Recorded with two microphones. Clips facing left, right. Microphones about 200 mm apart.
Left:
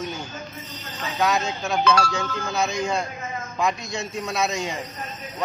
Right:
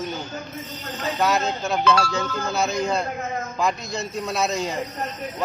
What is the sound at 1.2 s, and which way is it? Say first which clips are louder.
A man's voice: even; centre (ahead or behind).